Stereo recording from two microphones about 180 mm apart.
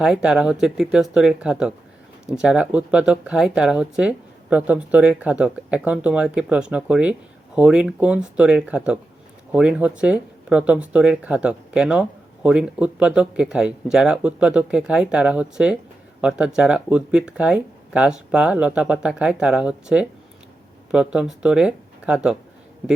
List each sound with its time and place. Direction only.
0.0 s speech: 5° right (ahead or behind)